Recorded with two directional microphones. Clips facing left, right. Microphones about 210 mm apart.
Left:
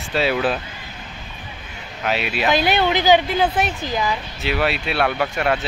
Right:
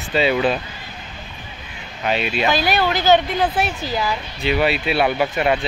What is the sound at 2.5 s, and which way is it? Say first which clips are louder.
Speech: left 3 dB; 20° left (ahead or behind).